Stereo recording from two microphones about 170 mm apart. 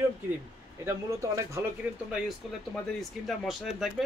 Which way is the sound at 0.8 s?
20° right (ahead or behind).